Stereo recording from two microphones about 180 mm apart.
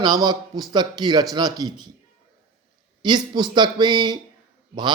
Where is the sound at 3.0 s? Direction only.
25° right (ahead or behind).